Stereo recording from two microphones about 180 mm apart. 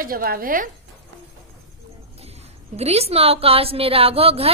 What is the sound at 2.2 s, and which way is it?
A woman's voice, 35° right (ahead or behind).